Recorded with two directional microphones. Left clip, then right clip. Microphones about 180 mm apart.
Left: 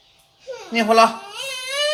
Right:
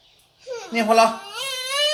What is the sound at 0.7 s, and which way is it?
Speech, 10° left (ahead or behind).